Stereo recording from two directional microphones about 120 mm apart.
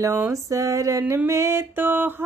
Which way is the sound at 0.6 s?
25° right (ahead or behind).